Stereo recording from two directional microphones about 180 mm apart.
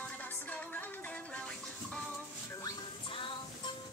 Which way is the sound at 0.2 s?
10° left (ahead or behind).